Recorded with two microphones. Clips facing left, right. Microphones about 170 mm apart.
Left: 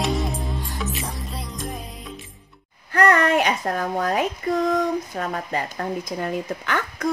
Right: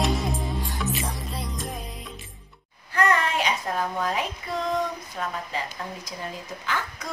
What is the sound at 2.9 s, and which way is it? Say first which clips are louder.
Speech: left 6 dB; 55° left (ahead or behind).